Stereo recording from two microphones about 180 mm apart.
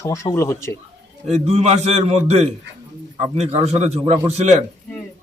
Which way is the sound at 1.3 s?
35° right (ahead or behind).